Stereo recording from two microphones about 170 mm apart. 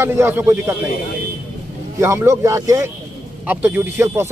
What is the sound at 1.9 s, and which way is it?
Speech, 15° right (ahead or behind).